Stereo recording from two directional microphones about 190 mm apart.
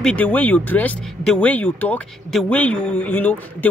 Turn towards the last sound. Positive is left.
turn(degrees=10)  # may be behind; listen again after turning